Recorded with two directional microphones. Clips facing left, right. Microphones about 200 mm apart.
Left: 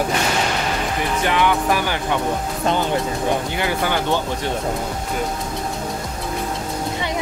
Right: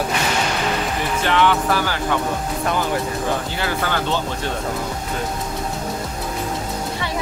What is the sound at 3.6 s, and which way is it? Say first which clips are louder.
Music: left 2 dB; 15° left (ahead or behind).